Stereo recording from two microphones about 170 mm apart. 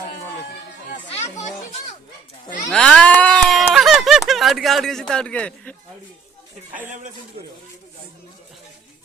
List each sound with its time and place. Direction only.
1.1 s children playing: 45° left (ahead or behind)
2.6 s a sound: 5° left (ahead or behind)
4.3 s speech: centre (ahead or behind)